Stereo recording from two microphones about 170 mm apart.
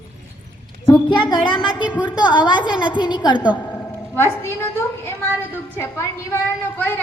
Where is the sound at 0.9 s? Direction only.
25° left (ahead or behind).